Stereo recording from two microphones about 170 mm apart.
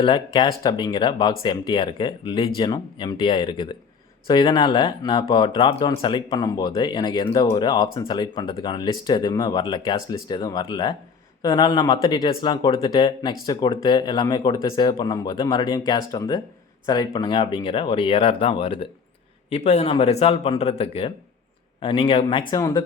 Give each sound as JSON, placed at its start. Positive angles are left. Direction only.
{"t": 0.3, "sound": "speech", "side_deg": 25}